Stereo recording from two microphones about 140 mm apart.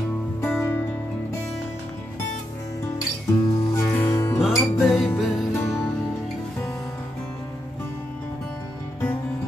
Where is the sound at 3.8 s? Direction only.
15° left (ahead or behind).